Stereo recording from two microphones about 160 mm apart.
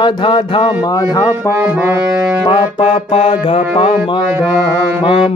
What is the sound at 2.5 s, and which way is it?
Music, 35° left (ahead or behind).